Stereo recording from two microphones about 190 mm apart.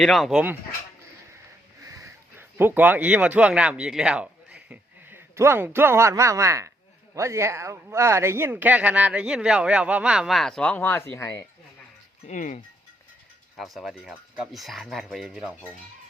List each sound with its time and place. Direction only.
0.0 s speech: centre (ahead or behind)
1.8 s speech: 15° right (ahead or behind); by 11.4 s 15° left (ahead or behind)
12.3 s speech: 40° left (ahead or behind)
13.6 s speech: centre (ahead or behind)